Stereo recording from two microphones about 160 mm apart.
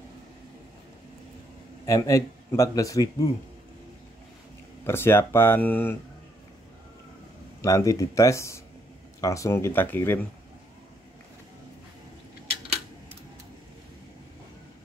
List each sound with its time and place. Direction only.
1.9 s a man's voice: 20° left (ahead or behind)
4.8 s speech: 15° left (ahead or behind)
7.6 s a man's voice: 20° left (ahead or behind)